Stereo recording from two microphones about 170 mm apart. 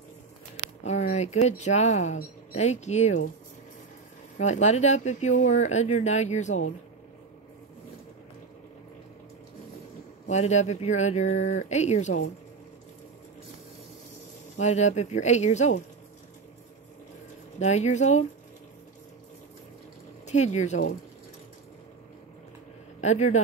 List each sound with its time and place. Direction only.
0.8 s speech: 45° left (ahead or behind)
4.4 s speech: 40° left (ahead or behind)
10.2 s speech: 40° left (ahead or behind)
14.6 s speech: 40° left (ahead or behind)
17.6 s speech: 40° left (ahead or behind)
20.2 s speech: 40° left (ahead or behind)
22.9 s a man's voice: 40° left (ahead or behind)